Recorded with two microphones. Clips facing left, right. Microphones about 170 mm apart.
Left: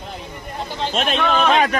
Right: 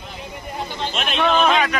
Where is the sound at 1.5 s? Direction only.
45° left (ahead or behind).